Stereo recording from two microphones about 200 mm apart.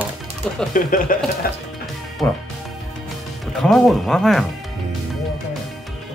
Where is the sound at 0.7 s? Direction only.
45° left (ahead or behind).